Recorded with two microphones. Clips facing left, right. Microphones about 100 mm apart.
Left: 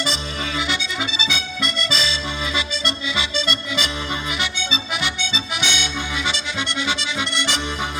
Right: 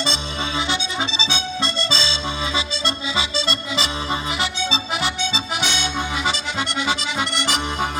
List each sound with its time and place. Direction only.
0.0 s accordion: 25° right (ahead or behind)